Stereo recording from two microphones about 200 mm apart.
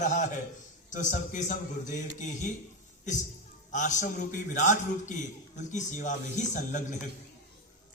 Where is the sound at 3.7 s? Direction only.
40° left (ahead or behind).